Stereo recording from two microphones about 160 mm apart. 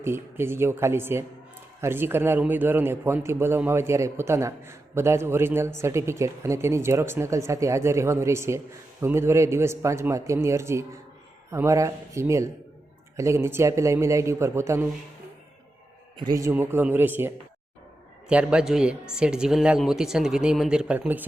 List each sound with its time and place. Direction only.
0.0 s a man's voice: 15° right (ahead or behind)
16.2 s a man's voice: 20° right (ahead or behind)